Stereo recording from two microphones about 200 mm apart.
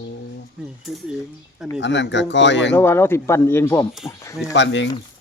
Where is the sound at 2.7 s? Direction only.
10° left (ahead or behind).